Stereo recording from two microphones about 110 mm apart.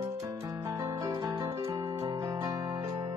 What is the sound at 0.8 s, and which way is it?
Music, 35° right (ahead or behind).